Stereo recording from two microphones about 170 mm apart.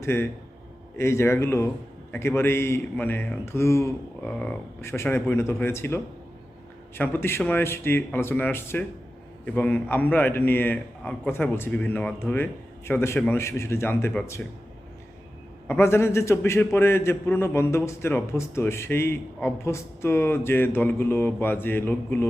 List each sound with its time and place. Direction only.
0.0 s a man's voice: 15° left (ahead or behind)
15.6 s a man's voice: 15° left (ahead or behind)